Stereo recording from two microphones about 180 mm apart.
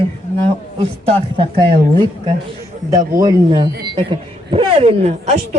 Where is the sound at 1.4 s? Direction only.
25° right (ahead or behind).